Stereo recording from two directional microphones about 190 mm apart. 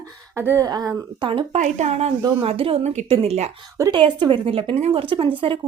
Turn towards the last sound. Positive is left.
turn(degrees=-25)  # may be behind; listen again after turning